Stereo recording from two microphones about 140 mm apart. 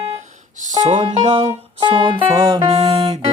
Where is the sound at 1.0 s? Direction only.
45° right (ahead or behind); by 2.7 s 25° right (ahead or behind).